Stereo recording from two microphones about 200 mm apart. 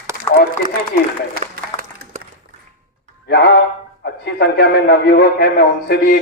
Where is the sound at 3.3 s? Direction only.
50° left (ahead or behind).